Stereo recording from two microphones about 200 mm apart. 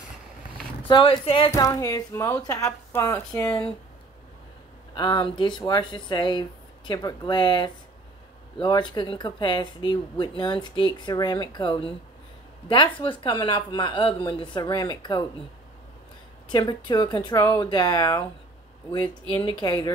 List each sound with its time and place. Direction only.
0.8 s speech: 25° left (ahead or behind)
4.9 s speech: 20° left (ahead or behind)
16.5 s speech: 20° left (ahead or behind)